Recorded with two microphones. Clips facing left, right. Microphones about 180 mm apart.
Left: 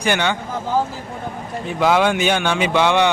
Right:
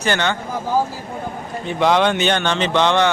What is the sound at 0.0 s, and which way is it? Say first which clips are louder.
Speech: even; 10° left (ahead or behind).